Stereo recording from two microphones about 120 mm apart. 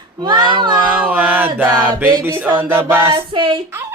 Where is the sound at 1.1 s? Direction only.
15° right (ahead or behind).